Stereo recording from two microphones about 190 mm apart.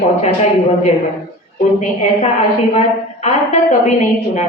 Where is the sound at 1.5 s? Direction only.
40° left (ahead or behind).